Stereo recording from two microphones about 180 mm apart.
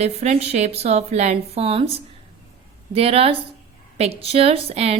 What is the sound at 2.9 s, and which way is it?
A woman's voice, 35° right (ahead or behind).